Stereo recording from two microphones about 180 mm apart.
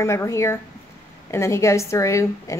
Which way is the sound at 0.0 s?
15° left (ahead or behind).